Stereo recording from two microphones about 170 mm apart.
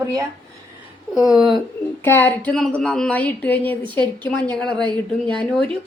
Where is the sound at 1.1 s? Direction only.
Centre (ahead or behind).